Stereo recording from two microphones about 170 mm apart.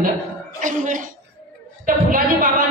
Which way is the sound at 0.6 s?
50° right (ahead or behind).